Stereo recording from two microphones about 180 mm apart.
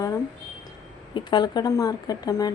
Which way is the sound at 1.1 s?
25° left (ahead or behind).